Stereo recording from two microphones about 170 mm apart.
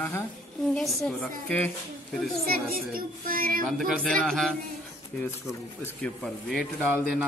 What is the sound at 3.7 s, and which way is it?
Speech, centre (ahead or behind).